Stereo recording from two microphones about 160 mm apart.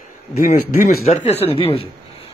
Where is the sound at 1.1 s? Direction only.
45° left (ahead or behind).